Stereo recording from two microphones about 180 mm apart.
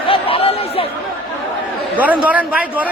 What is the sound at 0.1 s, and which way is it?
Chatter, 30° left (ahead or behind).